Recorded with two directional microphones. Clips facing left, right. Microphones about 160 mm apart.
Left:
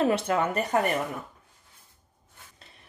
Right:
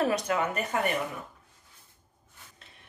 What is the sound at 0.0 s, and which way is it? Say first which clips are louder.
Speech: left 3 dB; 30° left (ahead or behind).